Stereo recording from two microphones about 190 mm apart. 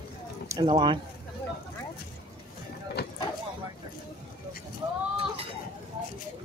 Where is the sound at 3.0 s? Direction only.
55° left (ahead or behind).